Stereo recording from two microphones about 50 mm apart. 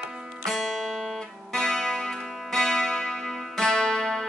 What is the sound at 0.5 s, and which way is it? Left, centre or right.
Music, centre.